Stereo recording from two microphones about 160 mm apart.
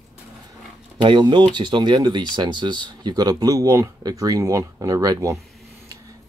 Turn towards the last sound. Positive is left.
turn(degrees=-20)  # may be behind; listen again after turning